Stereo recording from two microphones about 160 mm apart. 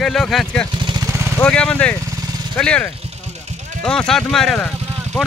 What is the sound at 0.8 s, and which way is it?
Vehicle, 25° right (ahead or behind).